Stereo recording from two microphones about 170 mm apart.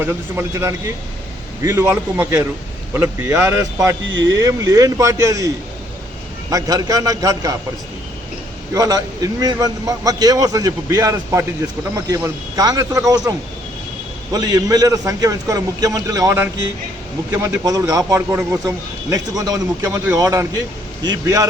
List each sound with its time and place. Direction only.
0.0 s speech: 15° right (ahead or behind)
4.0 s speech: 90° right
4.3 s a man's voice: 20° right (ahead or behind)
6.5 s a man's voice: 20° right (ahead or behind)
8.7 s a man's voice: 20° right (ahead or behind)
14.3 s a man's voice: 20° right (ahead or behind)